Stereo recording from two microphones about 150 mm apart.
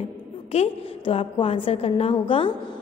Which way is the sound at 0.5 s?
40° left (ahead or behind).